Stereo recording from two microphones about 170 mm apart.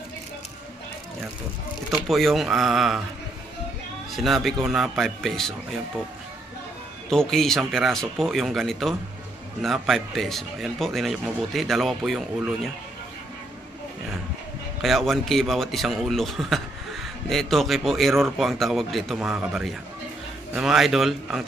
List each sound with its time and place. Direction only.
2.0 s a man's voice: centre (ahead or behind)
4.1 s a man's voice: centre (ahead or behind)
7.1 s a man's voice: centre (ahead or behind)
14.8 s a man's voice: centre (ahead or behind)